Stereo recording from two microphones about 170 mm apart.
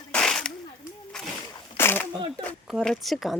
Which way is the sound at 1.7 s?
15° left (ahead or behind).